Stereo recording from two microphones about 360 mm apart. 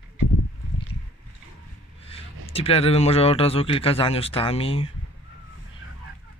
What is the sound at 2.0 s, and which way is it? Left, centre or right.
Speech, centre.